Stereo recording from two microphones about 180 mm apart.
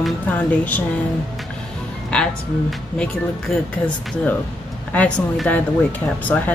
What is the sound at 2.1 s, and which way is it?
Speech, 5° left (ahead or behind).